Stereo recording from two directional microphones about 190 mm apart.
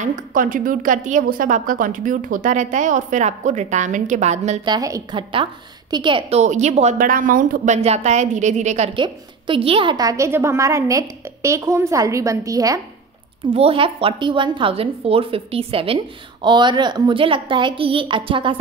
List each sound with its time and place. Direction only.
0.0 s a woman's voice: 45° right (ahead or behind)
4.6 s a woman's voice: 20° right (ahead or behind)
6.4 s a woman's voice: 35° right (ahead or behind); by 12.8 s 20° right (ahead or behind)
13.5 s a woman's voice: 30° right (ahead or behind)